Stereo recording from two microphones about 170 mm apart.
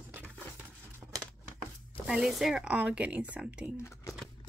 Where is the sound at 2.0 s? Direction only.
Centre (ahead or behind).